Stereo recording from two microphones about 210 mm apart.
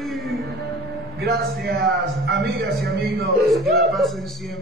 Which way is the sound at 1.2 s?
50° right (ahead or behind).